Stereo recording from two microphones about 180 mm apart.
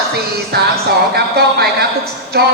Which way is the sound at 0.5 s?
60° right (ahead or behind).